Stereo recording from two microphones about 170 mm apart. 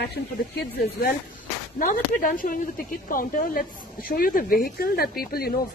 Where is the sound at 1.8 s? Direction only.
55° left (ahead or behind).